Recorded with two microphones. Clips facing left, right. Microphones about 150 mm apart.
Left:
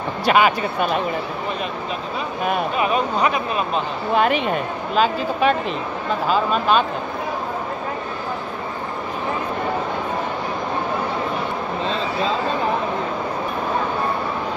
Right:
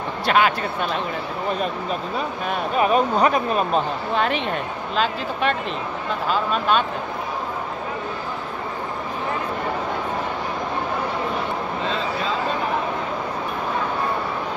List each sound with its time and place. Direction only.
0.2 s speech: 5° left (ahead or behind)
2.8 s speech: 40° right (ahead or behind)
4.1 s speech: 5° left (ahead or behind)